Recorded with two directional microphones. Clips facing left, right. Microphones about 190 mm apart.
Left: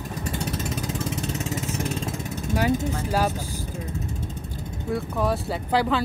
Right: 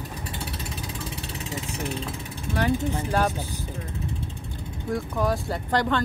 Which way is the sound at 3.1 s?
5° left (ahead or behind).